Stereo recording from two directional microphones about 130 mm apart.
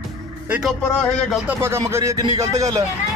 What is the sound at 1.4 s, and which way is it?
Music, 20° right (ahead or behind).